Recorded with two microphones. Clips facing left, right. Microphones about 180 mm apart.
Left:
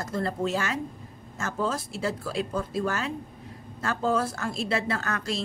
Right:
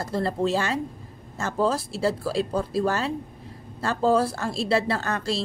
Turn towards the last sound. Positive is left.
turn(degrees=-30)  # may be behind; listen again after turning